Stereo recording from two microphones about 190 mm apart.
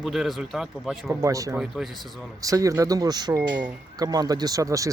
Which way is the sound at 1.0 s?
15° right (ahead or behind).